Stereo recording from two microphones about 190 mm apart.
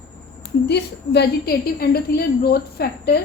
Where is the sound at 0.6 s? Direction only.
60° left (ahead or behind).